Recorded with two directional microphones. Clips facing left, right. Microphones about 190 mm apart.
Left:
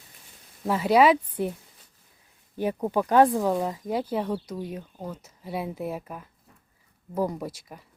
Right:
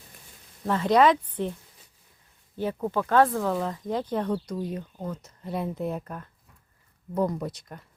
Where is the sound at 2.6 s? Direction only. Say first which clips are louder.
Left 2 dB; 15° left (ahead or behind).